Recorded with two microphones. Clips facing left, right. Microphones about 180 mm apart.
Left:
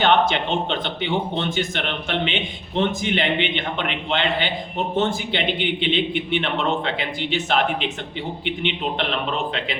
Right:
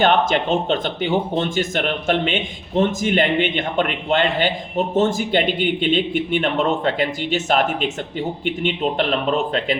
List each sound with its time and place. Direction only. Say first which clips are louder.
0.0 s speech: right 2 dB; 45° right (ahead or behind)